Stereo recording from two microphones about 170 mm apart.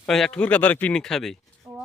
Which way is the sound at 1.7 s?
20° right (ahead or behind).